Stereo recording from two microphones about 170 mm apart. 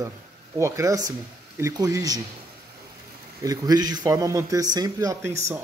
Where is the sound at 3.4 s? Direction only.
20° right (ahead or behind).